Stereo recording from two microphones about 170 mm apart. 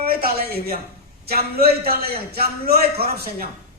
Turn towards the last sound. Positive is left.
turn(degrees=-65)  # may be behind; listen again after turning